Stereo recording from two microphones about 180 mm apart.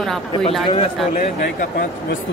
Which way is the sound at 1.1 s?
45° left (ahead or behind).